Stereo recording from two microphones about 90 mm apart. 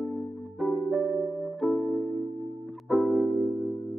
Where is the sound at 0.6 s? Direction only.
Centre (ahead or behind).